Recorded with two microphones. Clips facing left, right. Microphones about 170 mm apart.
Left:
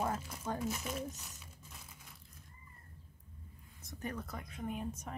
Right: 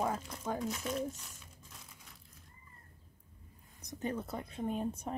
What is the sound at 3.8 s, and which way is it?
Speech, 20° right (ahead or behind).